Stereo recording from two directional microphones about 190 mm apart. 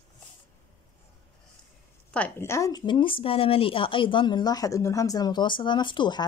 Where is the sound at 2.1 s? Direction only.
10° left (ahead or behind).